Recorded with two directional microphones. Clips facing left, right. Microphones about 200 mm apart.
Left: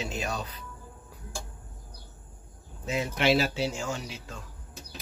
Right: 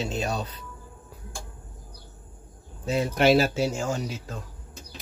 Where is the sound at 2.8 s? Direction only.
35° right (ahead or behind).